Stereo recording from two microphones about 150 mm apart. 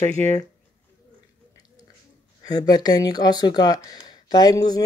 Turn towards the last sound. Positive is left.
turn(degrees=25)  # may be behind; listen again after turning